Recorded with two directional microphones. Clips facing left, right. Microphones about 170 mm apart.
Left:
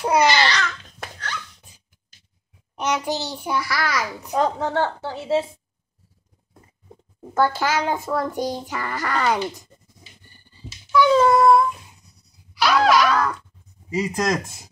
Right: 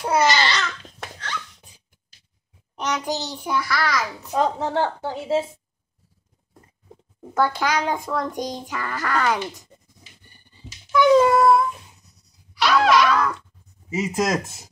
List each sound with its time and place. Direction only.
0.0 s speech: 15° left (ahead or behind)
2.7 s a child's voice: 10° left (ahead or behind)
4.6 s a woman's voice: 10° right (ahead or behind)
7.2 s a child's voice: centre (ahead or behind)
11.0 s cat: 15° right (ahead or behind)
11.3 s speech: 5° right (ahead or behind)
12.5 s a sound: centre (ahead or behind)
13.9 s speech: 5° right (ahead or behind)